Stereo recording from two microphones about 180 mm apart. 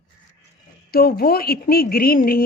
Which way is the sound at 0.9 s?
55° left (ahead or behind).